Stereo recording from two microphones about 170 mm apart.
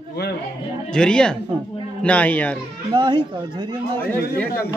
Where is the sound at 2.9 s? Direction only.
25° right (ahead or behind).